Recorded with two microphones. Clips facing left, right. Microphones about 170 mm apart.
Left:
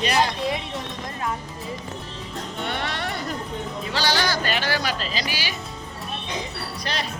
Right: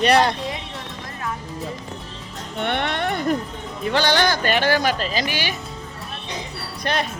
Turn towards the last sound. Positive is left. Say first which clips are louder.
# right 6 dB
turn(degrees=-55)  # may be behind; listen again after turning